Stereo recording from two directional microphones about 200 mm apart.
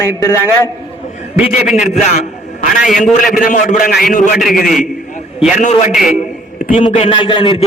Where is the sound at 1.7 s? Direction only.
35° left (ahead or behind).